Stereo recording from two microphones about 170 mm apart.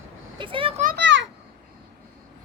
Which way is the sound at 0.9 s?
90° right.